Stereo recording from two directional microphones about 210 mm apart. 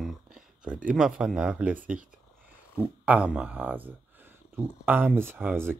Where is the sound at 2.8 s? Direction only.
5° right (ahead or behind).